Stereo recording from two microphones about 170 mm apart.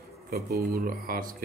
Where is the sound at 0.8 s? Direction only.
55° right (ahead or behind).